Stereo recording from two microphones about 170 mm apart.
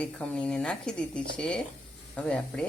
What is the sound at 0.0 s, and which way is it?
Speech, 5° left (ahead or behind).